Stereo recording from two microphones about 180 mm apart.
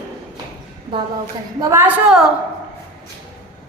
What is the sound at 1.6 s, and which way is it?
Speech, 15° right (ahead or behind).